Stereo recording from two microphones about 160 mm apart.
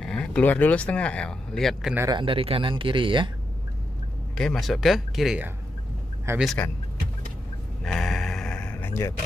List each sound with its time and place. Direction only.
0.0 s speech: 5° left (ahead or behind)
2.0 s speech: 25° right (ahead or behind)
4.4 s speech: centre (ahead or behind)
7.8 s a sound: centre (ahead or behind)